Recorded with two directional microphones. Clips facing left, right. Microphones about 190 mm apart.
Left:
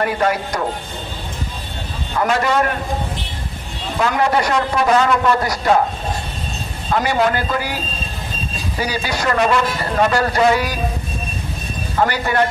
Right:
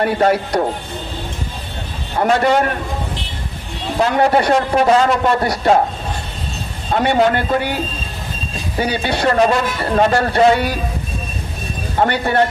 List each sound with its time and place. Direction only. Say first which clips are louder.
0.0 s a man's voice: right 3 dB; 30° right (ahead or behind)
2.1 s a man's voice: right 3 dB; 30° right (ahead or behind)
4.0 s a man's voice: right 3 dB; 30° right (ahead or behind)
6.9 s a man's voice: right 3 dB; 30° right (ahead or behind)
8.7 s a man's voice: right 4 dB; 30° right (ahead or behind)
12.0 s a man's voice: right 2 dB; 30° right (ahead or behind)